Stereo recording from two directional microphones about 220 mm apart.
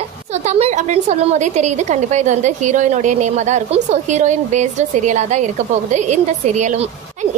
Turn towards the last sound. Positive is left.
turn(degrees=-30)  # may be behind; listen again after turning